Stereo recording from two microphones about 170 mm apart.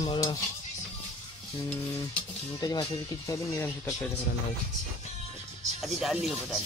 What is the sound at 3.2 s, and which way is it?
Speech, 20° left (ahead or behind).